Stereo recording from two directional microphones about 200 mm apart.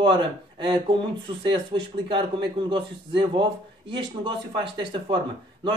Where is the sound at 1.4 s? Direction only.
25° right (ahead or behind).